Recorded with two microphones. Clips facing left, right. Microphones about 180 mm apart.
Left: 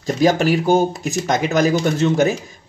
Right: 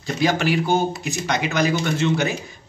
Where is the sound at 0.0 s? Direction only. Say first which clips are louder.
Left 5 dB; 45° left (ahead or behind).